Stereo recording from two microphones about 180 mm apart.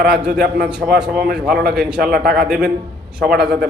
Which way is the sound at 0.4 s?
55° right (ahead or behind).